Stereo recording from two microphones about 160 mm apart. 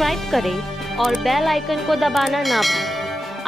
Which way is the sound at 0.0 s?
Centre (ahead or behind).